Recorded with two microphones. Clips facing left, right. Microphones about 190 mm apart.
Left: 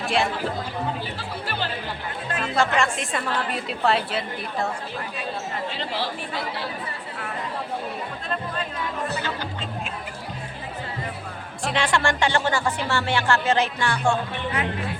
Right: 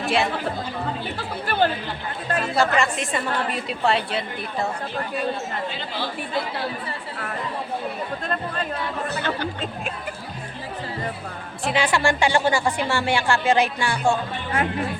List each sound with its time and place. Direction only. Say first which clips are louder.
0.0 s speech: right 1 dB; centre (ahead or behind)
1.5 s speech: right 10 dB; 55° right (ahead or behind)
2.4 s a woman's voice: right 1 dB; 5° right (ahead or behind)
9.2 s music: right 4 dB; 55° right (ahead or behind)
11.6 s speech: right 2 dB; 5° right (ahead or behind)